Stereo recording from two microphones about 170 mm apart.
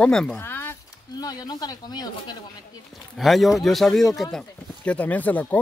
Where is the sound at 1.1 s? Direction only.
25° left (ahead or behind).